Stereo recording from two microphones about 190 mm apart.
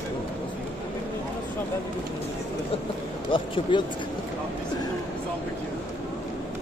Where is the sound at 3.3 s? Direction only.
25° left (ahead or behind).